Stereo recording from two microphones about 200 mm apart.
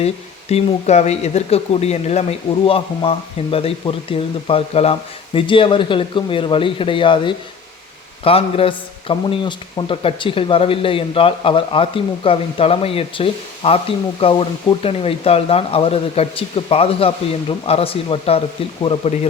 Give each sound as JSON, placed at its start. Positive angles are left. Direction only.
{"t": 0.0, "sound": "a man's voice", "side_deg": 30}